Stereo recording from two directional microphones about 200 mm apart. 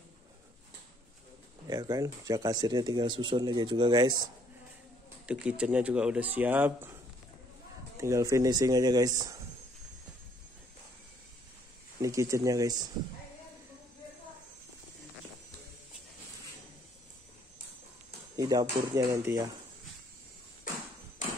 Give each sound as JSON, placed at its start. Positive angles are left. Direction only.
{"t": 1.7, "sound": "speech", "side_deg": -20}
{"t": 5.2, "sound": "speech", "side_deg": -5}
{"t": 8.0, "sound": "speech", "side_deg": -15}
{"t": 12.0, "sound": "speech", "side_deg": -15}
{"t": 18.3, "sound": "speech", "side_deg": -20}